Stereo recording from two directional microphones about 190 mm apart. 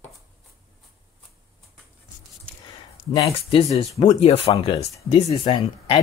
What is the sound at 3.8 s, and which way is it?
Speech, 30° left (ahead or behind).